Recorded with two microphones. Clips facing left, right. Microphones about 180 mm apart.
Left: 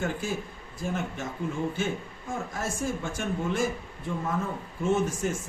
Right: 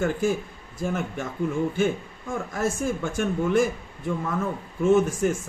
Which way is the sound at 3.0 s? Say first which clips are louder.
Right 5 dB; 50° right (ahead or behind).